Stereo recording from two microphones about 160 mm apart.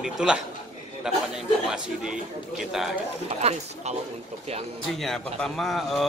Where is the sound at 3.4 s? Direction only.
45° right (ahead or behind).